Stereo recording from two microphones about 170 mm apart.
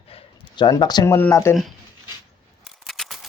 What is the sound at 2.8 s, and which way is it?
Scissors, centre (ahead or behind).